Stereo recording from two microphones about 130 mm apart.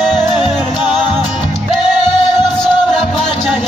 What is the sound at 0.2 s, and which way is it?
Music, 35° left (ahead or behind).